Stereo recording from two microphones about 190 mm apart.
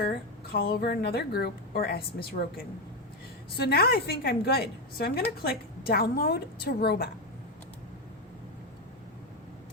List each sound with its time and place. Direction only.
0.0 s a woman's voice: 55° left (ahead or behind)